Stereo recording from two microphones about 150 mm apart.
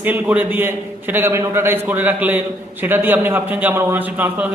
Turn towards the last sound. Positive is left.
turn(degrees=-10)  # may be behind; listen again after turning